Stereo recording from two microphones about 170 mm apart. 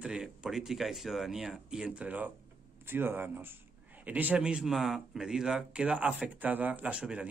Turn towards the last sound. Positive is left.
turn(degrees=-5)  # may be behind; listen again after turning